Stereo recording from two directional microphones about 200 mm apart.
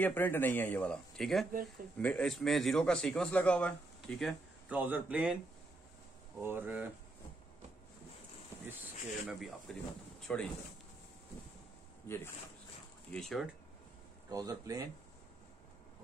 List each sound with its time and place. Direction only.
0.0 s a man's voice: 10° left (ahead or behind); by 5.4 s 5° right (ahead or behind)
6.4 s speech: 10° right (ahead or behind)
9.3 s a man's voice: centre (ahead or behind)
13.1 s a man's voice: centre (ahead or behind)
14.3 s speech: 20° right (ahead or behind)